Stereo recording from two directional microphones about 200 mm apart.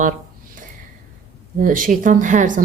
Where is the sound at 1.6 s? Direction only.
40° right (ahead or behind).